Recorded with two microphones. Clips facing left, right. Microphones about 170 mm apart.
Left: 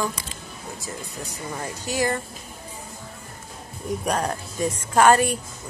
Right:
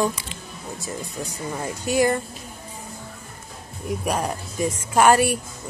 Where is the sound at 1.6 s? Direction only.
15° right (ahead or behind).